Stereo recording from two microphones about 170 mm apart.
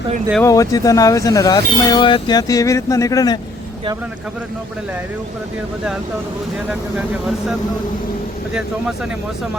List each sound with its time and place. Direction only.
0.4 s speech: 20° left (ahead or behind)